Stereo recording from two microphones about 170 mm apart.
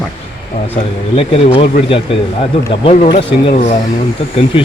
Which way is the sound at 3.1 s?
45° left (ahead or behind).